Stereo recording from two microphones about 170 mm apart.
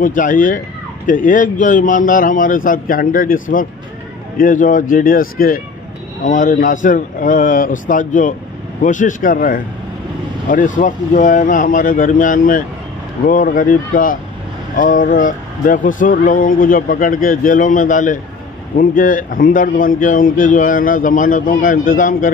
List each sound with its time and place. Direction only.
0.0 s a man's voice: 50° left (ahead or behind)